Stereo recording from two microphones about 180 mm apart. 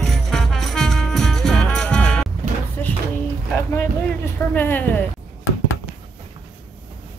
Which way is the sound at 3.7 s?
10° left (ahead or behind).